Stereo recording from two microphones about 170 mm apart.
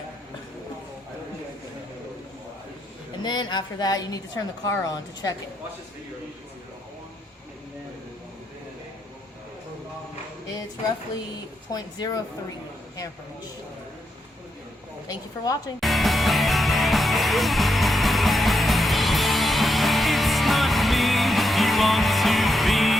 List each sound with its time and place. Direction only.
3.2 s a woman's voice: 25° left (ahead or behind)
11.7 s a woman's voice: 25° left (ahead or behind)
15.0 s a woman's voice: 20° left (ahead or behind)
15.8 s music: centre (ahead or behind)